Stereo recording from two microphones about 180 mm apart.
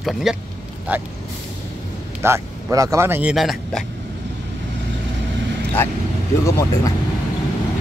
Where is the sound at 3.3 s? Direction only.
Centre (ahead or behind).